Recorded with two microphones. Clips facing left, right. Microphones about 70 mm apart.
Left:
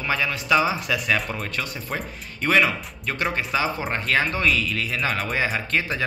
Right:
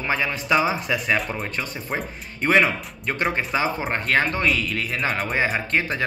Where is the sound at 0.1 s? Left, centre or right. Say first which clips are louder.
Even; right.